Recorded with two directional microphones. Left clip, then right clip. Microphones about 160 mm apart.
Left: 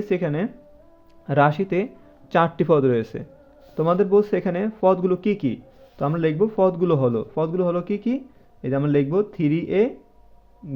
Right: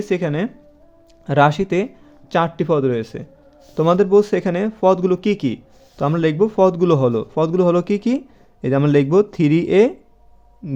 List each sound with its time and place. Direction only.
0.0 s a man's voice: 20° right (ahead or behind)
2.3 s a man's voice: 10° right (ahead or behind)
3.8 s a man's voice: 25° right (ahead or behind)